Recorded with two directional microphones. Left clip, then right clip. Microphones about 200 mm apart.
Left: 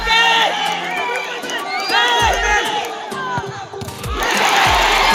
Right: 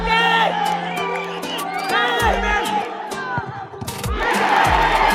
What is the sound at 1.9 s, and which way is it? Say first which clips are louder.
Music: left 4 dB; 55° right (ahead or behind).